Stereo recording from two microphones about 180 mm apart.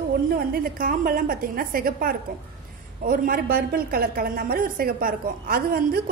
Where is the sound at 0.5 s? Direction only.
50° right (ahead or behind).